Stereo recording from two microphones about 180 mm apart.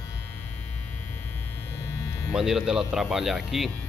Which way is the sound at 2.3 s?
Centre (ahead or behind).